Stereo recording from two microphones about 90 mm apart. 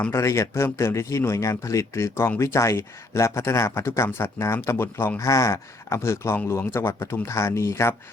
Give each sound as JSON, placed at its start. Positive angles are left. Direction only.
{"t": 0.1, "sound": "speech", "side_deg": 30}